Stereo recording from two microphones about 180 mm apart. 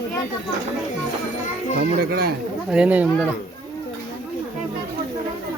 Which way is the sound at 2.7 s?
5° right (ahead or behind).